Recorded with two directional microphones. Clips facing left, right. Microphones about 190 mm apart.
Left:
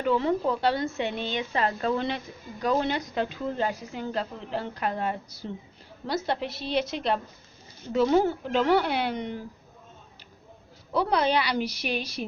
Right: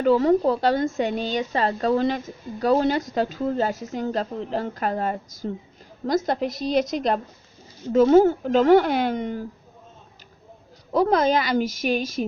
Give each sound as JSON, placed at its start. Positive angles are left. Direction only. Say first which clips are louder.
{"t": 0.0, "sound": "a woman's voice", "louder": "right 7 dB", "side_deg": -40}
{"t": 10.9, "sound": "a woman's voice", "louder": "right 5 dB", "side_deg": -45}